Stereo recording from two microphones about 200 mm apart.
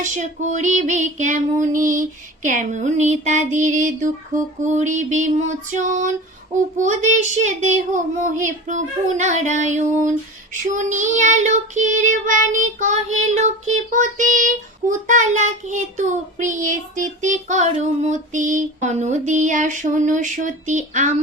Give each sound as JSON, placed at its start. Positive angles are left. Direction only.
{"t": 0.0, "sound": "speech", "side_deg": -40}